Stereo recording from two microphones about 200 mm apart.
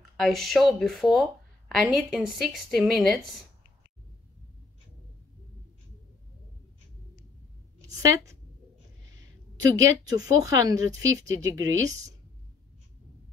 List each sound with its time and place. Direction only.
0.2 s speech: centre (ahead or behind)
8.0 s speech: 15° right (ahead or behind)
9.8 s speech: 15° right (ahead or behind)